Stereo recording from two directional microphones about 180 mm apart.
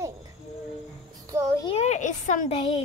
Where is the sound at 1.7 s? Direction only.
40° left (ahead or behind).